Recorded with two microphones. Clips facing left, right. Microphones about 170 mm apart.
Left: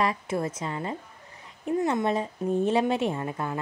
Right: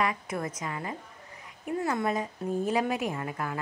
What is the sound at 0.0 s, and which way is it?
A woman's voice, 30° left (ahead or behind).